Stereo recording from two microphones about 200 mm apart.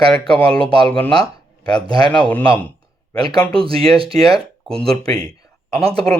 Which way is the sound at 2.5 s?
10° left (ahead or behind).